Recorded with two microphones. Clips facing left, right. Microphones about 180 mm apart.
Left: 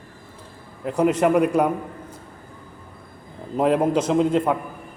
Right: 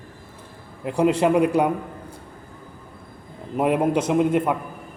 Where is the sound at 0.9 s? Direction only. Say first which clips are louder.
Even; 15° right (ahead or behind).